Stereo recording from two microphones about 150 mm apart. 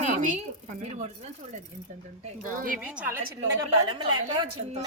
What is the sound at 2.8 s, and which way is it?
Speech, 10° right (ahead or behind).